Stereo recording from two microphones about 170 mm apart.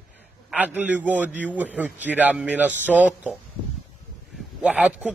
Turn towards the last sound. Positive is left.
turn(degrees=-10)  # may be behind; listen again after turning